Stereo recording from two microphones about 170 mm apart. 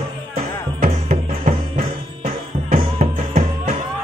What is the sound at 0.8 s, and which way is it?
Music, 60° right (ahead or behind).